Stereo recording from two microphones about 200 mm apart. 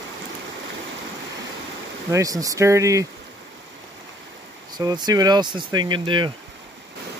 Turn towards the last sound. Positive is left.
turn(degrees=-25)  # may be behind; listen again after turning